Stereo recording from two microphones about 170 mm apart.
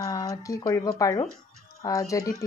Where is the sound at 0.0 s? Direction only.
20° left (ahead or behind).